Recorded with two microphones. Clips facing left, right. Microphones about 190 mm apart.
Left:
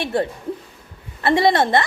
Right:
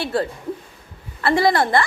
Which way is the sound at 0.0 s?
20° left (ahead or behind).